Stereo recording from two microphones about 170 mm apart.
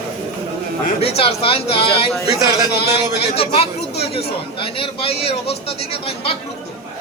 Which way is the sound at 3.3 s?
35° left (ahead or behind).